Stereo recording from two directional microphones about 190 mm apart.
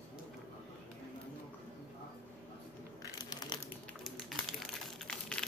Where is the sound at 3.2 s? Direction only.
20° left (ahead or behind).